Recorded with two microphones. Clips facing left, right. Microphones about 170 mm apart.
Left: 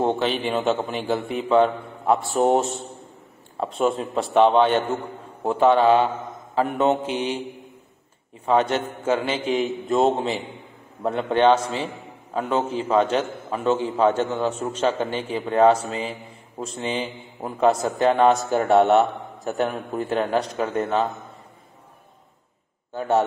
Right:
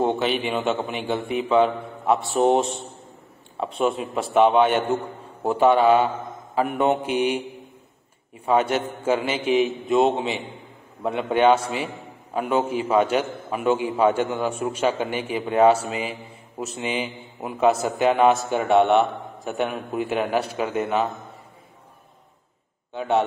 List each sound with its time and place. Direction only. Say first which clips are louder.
0.0 s a man's voice: even; centre (ahead or behind)
8.5 s a man's voice: even; 10° right (ahead or behind)
9.7 s a man's voice: even; centre (ahead or behind)
15.9 s mantra: even; 10° right (ahead or behind)
17.4 s a man's voice: even; 5° right (ahead or behind)